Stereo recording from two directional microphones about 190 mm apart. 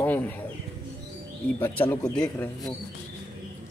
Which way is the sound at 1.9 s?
10° left (ahead or behind).